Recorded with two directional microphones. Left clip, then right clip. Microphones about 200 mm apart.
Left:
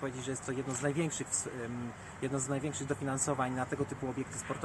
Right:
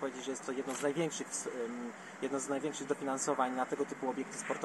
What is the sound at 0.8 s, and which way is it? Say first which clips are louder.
Speech: right 1 dB; 10° left (ahead or behind).